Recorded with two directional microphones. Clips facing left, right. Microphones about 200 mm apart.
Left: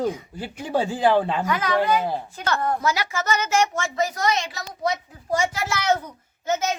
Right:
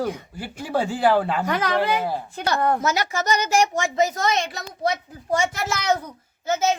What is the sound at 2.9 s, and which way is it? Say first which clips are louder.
Speech: right 2 dB; 40° right (ahead or behind).